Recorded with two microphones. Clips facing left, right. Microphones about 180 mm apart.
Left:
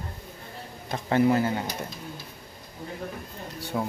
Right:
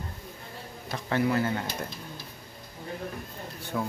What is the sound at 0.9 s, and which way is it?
Speech, 25° left (ahead or behind).